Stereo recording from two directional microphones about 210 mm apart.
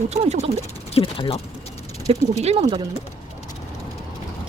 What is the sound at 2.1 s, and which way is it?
Speech, 30° right (ahead or behind).